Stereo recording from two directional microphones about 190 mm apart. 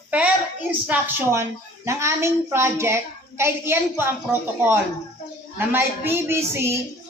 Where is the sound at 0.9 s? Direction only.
10° right (ahead or behind).